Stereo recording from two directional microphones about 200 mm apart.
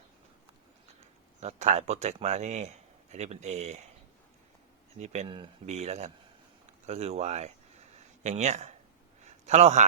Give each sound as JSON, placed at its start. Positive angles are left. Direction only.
{"t": 1.4, "sound": "speech", "side_deg": -35}
{"t": 4.9, "sound": "speech", "side_deg": -35}
{"t": 9.2, "sound": "a sound", "side_deg": -35}